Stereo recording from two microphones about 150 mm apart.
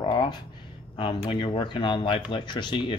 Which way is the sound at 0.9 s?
35° left (ahead or behind).